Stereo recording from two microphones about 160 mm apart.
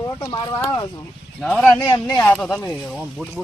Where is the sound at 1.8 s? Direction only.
25° left (ahead or behind).